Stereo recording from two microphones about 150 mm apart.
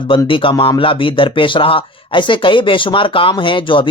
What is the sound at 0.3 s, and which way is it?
Speech, 35° left (ahead or behind).